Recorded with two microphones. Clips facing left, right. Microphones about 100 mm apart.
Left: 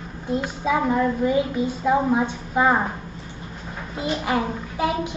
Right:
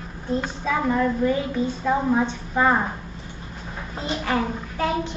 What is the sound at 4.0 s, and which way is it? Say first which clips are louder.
A woman's voice: left 1 dB; 15° left (ahead or behind).